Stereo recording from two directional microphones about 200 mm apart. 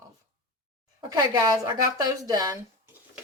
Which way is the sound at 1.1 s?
20° right (ahead or behind).